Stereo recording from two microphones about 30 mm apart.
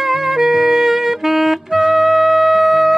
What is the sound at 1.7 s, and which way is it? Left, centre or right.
Music, centre.